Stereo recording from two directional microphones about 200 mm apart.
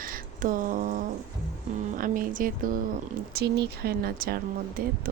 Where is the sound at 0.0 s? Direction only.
45° right (ahead or behind).